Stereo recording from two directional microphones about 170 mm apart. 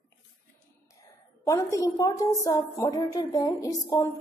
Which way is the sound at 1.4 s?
20° left (ahead or behind).